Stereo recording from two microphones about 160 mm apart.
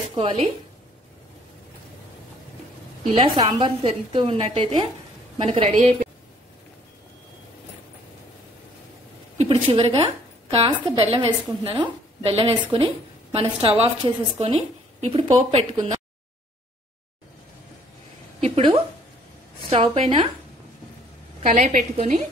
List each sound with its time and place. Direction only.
0.1 s speech: 35° right (ahead or behind)
3.2 s a woman's voice: 35° right (ahead or behind)
9.4 s a woman's voice: 35° right (ahead or behind)
19.7 s a woman's voice: 35° right (ahead or behind)
21.4 s a woman's voice: 45° right (ahead or behind)